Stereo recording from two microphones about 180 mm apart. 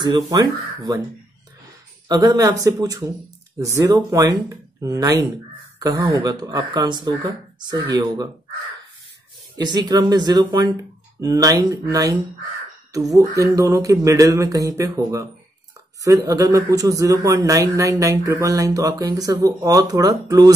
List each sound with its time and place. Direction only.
0.0 s speech: 25° right (ahead or behind)
2.0 s speech: 20° right (ahead or behind)
9.6 s speech: 20° right (ahead or behind)